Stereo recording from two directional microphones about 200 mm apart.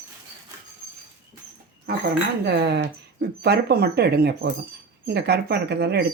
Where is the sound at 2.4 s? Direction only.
55° right (ahead or behind).